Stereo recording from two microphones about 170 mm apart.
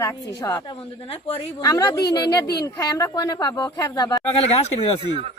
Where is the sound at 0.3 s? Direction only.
20° left (ahead or behind).